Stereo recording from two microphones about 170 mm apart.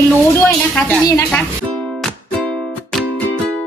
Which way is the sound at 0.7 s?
10° left (ahead or behind).